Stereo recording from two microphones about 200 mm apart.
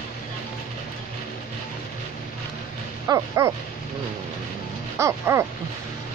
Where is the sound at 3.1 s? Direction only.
15° right (ahead or behind).